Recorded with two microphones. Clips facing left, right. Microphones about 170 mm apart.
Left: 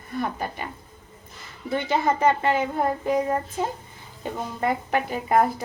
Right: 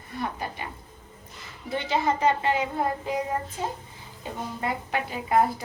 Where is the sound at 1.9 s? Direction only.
50° left (ahead or behind).